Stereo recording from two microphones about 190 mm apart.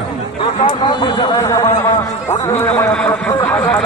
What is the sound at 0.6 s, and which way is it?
Speech, 25° left (ahead or behind).